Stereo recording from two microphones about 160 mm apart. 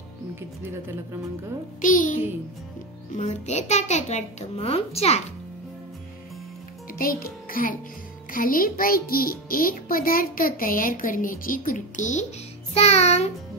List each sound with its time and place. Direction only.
0.4 s speech: 15° right (ahead or behind)
1.8 s a child's voice: 55° left (ahead or behind)
3.2 s a child's voice: 45° left (ahead or behind)
7.0 s a child's voice: 65° left (ahead or behind); by 13.3 s 45° left (ahead or behind)